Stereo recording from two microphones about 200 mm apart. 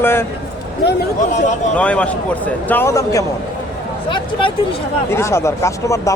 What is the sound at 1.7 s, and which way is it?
Speech, 5° left (ahead or behind).